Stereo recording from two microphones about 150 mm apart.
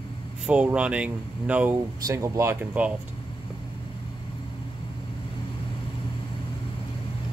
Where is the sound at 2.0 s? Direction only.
20° right (ahead or behind).